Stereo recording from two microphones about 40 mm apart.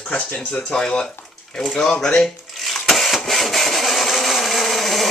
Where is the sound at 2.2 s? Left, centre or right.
Centre.